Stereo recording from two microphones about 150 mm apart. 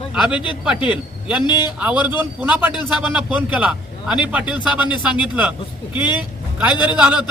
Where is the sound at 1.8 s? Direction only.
10° right (ahead or behind).